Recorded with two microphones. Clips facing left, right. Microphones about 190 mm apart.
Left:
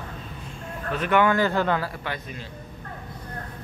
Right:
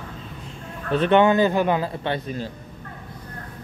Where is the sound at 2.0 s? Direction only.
35° right (ahead or behind).